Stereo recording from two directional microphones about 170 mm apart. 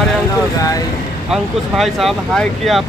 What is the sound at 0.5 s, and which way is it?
Speech, 20° left (ahead or behind).